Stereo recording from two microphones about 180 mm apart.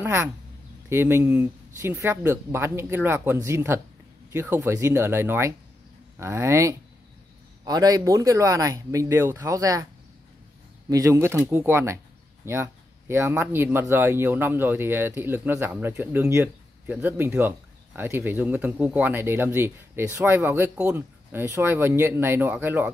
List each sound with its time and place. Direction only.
0.0 s speech: 10° right (ahead or behind)
10.9 s speech: 15° right (ahead or behind)
13.1 s speech: 10° right (ahead or behind)